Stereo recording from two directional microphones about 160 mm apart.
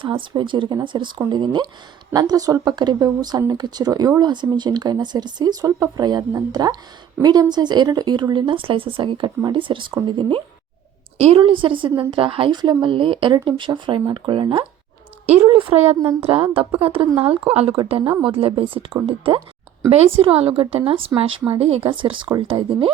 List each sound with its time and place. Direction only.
0.0 s a woman's voice: 30° right (ahead or behind)